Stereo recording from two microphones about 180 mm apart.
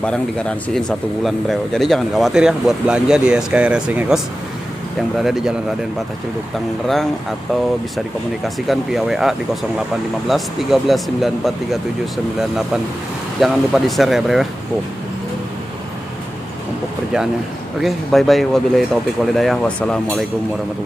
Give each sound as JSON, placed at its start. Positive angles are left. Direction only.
{"t": 0.0, "sound": "speech", "side_deg": 5}
{"t": 5.2, "sound": "speech", "side_deg": 0}
{"t": 6.9, "sound": "speech", "side_deg": 0}
{"t": 8.6, "sound": "speech", "side_deg": 0}
{"t": 13.4, "sound": "speech", "side_deg": 0}
{"t": 17.7, "sound": "speech", "side_deg": 0}